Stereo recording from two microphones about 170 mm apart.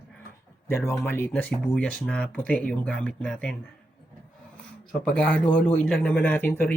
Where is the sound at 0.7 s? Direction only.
15° left (ahead or behind).